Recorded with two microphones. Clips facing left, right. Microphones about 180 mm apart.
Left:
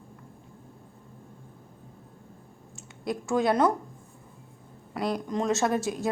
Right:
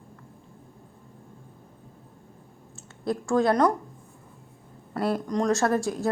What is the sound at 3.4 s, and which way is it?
Speech, 5° left (ahead or behind).